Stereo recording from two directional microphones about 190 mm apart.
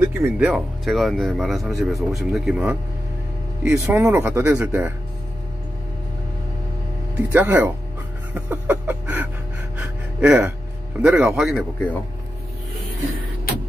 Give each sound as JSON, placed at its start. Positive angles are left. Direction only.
{"t": 0.0, "sound": "speech", "side_deg": -15}
{"t": 0.5, "sound": "speech", "side_deg": 0}
{"t": 3.8, "sound": "speech", "side_deg": -10}
{"t": 7.3, "sound": "speech", "side_deg": -10}
{"t": 8.4, "sound": "music", "side_deg": -10}
{"t": 9.8, "sound": "gasp", "side_deg": -5}
{"t": 11.0, "sound": "speech", "side_deg": -5}